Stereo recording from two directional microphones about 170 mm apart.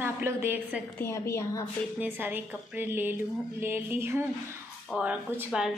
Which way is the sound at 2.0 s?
10° right (ahead or behind).